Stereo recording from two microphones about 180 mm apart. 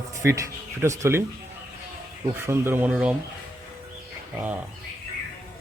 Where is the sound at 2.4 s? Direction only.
15° right (ahead or behind).